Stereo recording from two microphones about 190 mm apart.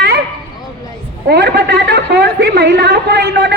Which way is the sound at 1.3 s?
60° right (ahead or behind).